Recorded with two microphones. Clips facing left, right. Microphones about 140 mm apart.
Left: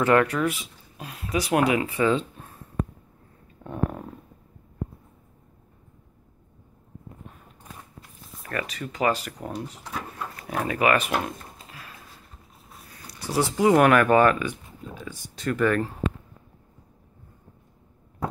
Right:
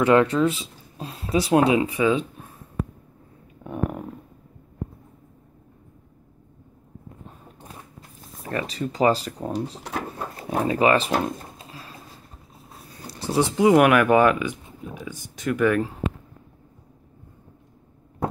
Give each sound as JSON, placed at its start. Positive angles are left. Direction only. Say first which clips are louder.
{"t": 0.0, "sound": "speech", "louder": "right 3 dB", "side_deg": -20}
{"t": 3.6, "sound": "dog", "louder": "right 1 dB", "side_deg": -10}
{"t": 8.4, "sound": "speech", "louder": "right 4 dB", "side_deg": -25}
{"t": 10.1, "sound": "a sound", "louder": "right 3 dB", "side_deg": -30}
{"t": 13.0, "sound": "speech", "louder": "right 3 dB", "side_deg": -25}